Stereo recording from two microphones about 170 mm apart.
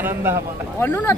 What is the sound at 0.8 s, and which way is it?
Speech, 10° left (ahead or behind).